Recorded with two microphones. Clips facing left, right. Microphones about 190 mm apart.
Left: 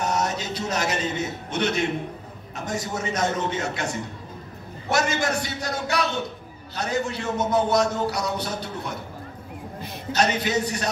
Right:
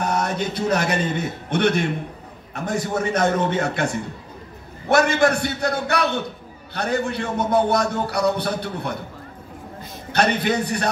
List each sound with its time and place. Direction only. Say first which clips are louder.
0.0 s a man's voice: right 3 dB; 55° right (ahead or behind)
10.1 s a man's voice: right 3 dB; 60° right (ahead or behind)